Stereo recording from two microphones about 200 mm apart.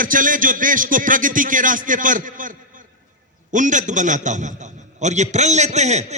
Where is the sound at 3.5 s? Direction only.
40° right (ahead or behind).